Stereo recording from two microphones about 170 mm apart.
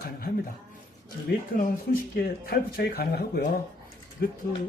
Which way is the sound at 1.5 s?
55° left (ahead or behind).